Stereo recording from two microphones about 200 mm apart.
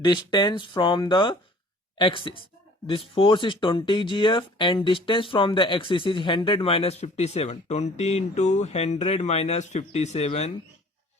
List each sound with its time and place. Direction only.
0.0 s speech: 20° left (ahead or behind)